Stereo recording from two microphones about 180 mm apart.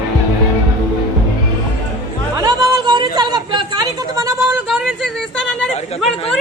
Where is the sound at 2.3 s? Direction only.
20° right (ahead or behind).